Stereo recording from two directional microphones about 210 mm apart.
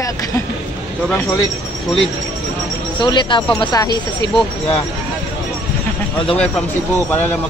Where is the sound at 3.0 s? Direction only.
20° left (ahead or behind).